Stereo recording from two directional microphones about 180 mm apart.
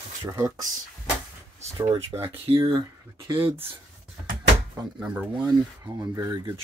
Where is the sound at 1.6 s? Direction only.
35° right (ahead or behind).